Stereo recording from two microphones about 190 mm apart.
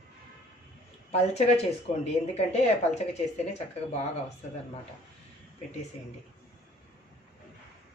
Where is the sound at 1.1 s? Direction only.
35° left (ahead or behind).